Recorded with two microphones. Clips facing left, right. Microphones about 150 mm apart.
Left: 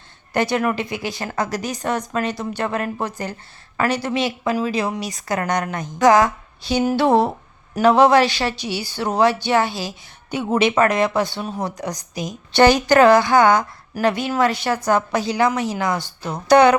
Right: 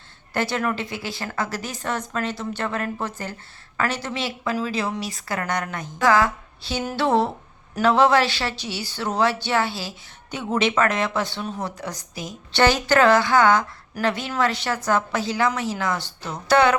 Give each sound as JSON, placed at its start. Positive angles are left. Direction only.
{"t": 0.3, "sound": "a woman's voice", "side_deg": 15}